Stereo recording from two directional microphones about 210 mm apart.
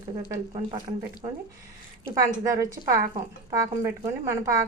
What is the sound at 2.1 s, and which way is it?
Speech, 15° right (ahead or behind).